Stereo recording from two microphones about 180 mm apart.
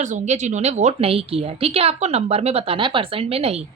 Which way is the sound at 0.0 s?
40° right (ahead or behind).